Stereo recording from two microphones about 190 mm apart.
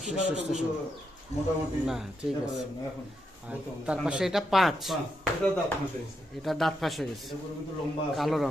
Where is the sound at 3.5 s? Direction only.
5° right (ahead or behind).